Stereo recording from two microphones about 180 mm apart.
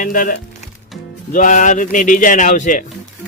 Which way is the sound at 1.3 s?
45° left (ahead or behind).